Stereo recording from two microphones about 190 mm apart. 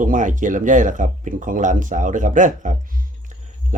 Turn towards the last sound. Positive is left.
turn(degrees=-40)  # may be behind; listen again after turning